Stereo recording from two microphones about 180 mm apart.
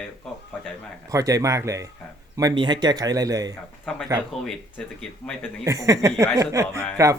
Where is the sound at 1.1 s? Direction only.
20° right (ahead or behind).